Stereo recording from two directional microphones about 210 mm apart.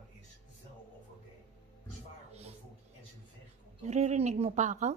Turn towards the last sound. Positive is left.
turn(degrees=-35)  # may be behind; listen again after turning